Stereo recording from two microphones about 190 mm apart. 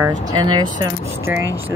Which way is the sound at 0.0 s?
20° right (ahead or behind).